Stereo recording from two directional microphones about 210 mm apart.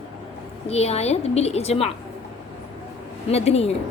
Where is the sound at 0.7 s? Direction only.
30° left (ahead or behind).